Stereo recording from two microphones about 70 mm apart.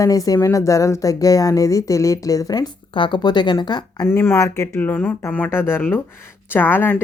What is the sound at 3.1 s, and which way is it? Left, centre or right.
Speech, left.